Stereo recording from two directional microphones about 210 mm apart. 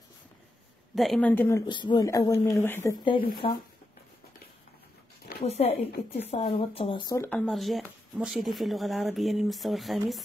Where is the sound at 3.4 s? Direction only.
25° left (ahead or behind).